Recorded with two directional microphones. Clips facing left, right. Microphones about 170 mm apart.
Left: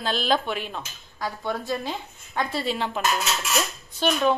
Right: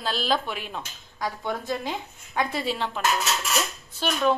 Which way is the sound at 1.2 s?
20° right (ahead or behind).